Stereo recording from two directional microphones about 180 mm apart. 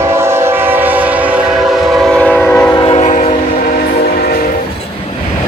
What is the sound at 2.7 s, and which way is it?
Train, 30° left (ahead or behind).